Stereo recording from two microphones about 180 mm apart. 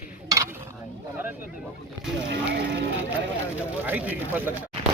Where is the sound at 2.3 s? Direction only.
75° right (ahead or behind).